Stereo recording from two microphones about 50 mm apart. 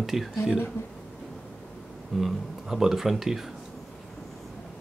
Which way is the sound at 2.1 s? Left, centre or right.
Centre.